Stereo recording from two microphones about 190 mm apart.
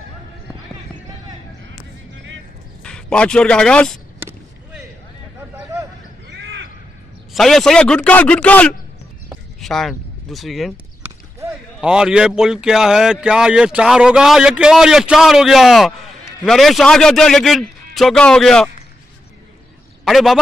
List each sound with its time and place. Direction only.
2.8 s speech: 5° left (ahead or behind)
6.2 s crow: 65° right (ahead or behind)
7.3 s speech: centre (ahead or behind)
20.1 s speech: centre (ahead or behind)